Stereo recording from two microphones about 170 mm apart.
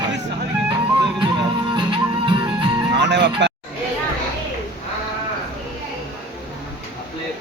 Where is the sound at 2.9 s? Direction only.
90° right.